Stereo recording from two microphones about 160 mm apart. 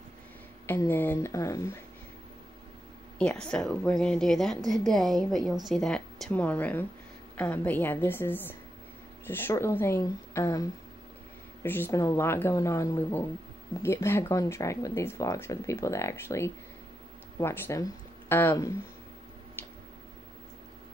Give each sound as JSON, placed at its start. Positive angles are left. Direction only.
{"t": 0.7, "sound": "speech", "side_deg": 15}
{"t": 3.2, "sound": "a woman's voice", "side_deg": 5}